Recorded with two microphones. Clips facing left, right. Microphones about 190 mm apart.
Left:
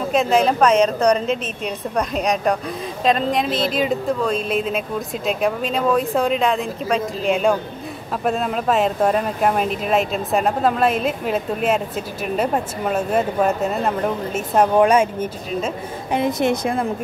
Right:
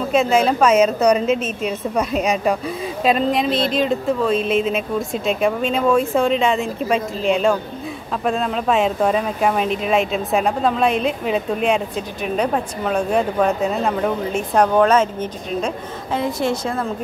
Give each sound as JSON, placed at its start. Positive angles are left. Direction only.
{"t": 0.1, "sound": "a woman's voice", "side_deg": 0}